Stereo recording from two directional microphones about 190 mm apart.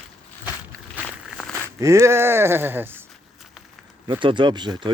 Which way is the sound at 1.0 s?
10° right (ahead or behind).